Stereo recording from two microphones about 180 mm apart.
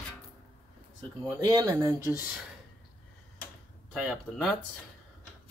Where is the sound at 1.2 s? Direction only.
20° right (ahead or behind).